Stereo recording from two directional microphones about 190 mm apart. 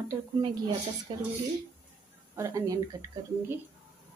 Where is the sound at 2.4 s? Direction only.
15° right (ahead or behind).